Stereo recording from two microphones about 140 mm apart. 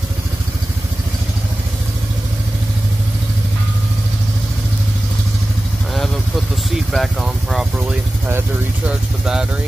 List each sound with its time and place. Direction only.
6.9 s speech: centre (ahead or behind)
8.3 s speech: 15° right (ahead or behind)
9.2 s speech: 5° right (ahead or behind)